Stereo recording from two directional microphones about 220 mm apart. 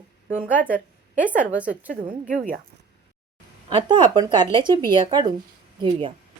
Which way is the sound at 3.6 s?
20° right (ahead or behind).